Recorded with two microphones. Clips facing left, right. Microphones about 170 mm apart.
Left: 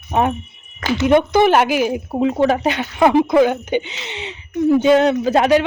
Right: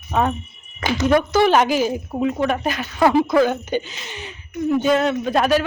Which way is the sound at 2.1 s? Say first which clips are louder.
Left 6 dB; 30° left (ahead or behind).